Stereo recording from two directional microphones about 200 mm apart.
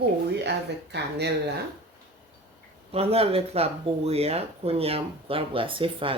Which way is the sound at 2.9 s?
30° right (ahead or behind).